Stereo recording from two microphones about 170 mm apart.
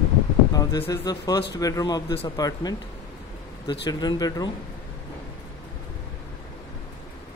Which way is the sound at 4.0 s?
25° left (ahead or behind).